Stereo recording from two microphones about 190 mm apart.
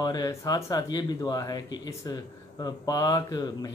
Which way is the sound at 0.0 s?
20° left (ahead or behind).